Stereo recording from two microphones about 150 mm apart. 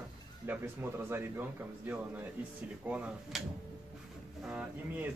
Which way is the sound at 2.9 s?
10° right (ahead or behind).